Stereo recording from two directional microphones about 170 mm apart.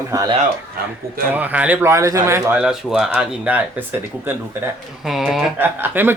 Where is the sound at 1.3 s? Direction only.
10° right (ahead or behind).